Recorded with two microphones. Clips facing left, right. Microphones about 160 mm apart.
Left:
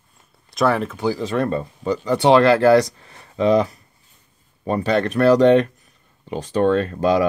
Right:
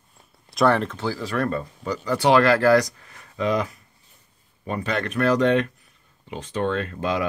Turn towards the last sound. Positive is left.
turn(degrees=35)  # may be behind; listen again after turning